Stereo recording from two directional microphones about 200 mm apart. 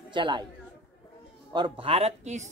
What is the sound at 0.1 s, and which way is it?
Speech, 25° right (ahead or behind).